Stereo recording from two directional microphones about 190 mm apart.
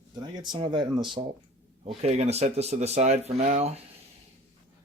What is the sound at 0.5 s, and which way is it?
Speech, 25° right (ahead or behind).